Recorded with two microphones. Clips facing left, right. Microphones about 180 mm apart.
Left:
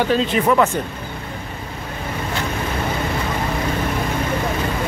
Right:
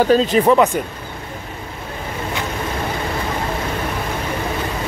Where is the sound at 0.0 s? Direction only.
40° right (ahead or behind).